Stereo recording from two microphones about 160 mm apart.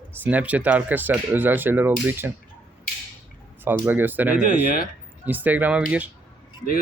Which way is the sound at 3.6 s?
10° right (ahead or behind).